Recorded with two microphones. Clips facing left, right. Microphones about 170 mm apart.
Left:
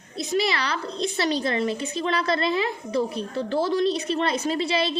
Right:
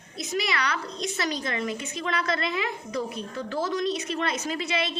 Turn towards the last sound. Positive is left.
turn(degrees=35)  # may be behind; listen again after turning